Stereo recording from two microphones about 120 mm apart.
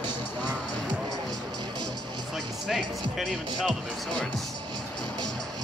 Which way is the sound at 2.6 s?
5° right (ahead or behind).